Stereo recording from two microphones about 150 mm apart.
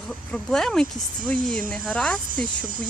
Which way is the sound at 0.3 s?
5° left (ahead or behind).